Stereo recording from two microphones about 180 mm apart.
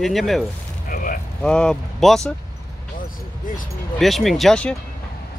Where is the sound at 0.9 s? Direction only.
50° left (ahead or behind).